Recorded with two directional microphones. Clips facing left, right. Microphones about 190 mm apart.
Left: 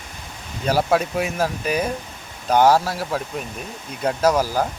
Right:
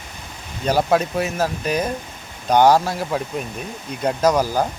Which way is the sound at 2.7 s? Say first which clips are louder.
Right 1 dB; 15° right (ahead or behind).